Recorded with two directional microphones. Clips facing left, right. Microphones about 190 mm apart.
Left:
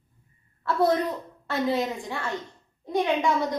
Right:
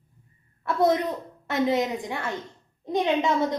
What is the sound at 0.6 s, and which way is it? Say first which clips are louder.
Speech: right 1 dB; 20° right (ahead or behind).